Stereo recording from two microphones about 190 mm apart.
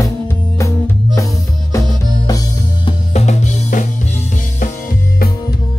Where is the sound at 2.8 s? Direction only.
35° left (ahead or behind).